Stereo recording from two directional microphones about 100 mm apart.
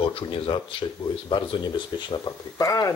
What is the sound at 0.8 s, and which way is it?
Speech, 45° left (ahead or behind).